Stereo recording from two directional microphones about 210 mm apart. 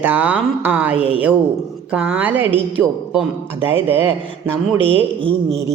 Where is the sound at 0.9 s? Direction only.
25° right (ahead or behind).